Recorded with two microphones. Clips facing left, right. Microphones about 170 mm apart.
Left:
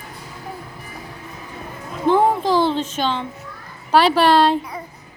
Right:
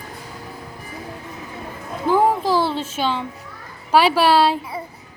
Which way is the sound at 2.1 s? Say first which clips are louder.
Left 1 dB; 5° right (ahead or behind).